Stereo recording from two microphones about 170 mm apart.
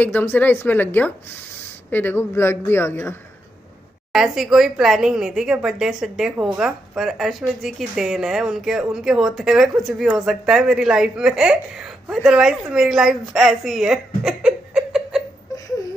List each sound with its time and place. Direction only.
0.0 s speech: 10° left (ahead or behind)
4.1 s a woman's voice: centre (ahead or behind)